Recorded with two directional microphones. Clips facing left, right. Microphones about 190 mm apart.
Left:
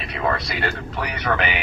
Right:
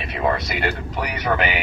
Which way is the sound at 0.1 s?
20° right (ahead or behind).